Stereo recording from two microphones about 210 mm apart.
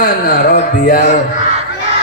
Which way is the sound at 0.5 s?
40° left (ahead or behind).